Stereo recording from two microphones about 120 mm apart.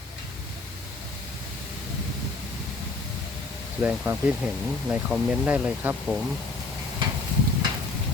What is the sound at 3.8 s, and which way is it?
Speech, 15° right (ahead or behind).